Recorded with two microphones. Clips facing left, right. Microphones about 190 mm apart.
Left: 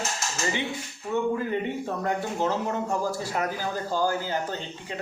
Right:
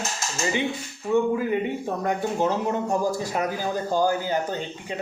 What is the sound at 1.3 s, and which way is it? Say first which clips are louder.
Speech: right 3 dB; 10° right (ahead or behind).